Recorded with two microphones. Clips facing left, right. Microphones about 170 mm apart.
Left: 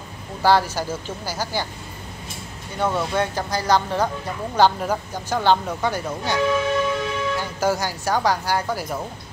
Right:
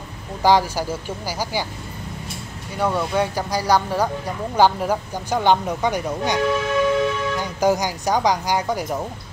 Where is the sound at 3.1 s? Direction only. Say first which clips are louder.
Right 2 dB; 10° right (ahead or behind).